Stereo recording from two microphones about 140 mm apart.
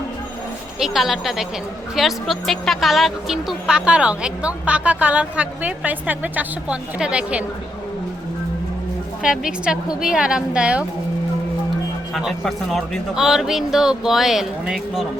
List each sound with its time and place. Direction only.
0.8 s speech: centre (ahead or behind)
9.2 s speech: 5° right (ahead or behind)
12.1 s speech: centre (ahead or behind)